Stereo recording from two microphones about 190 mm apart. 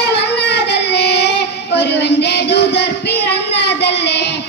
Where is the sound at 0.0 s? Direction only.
60° left (ahead or behind).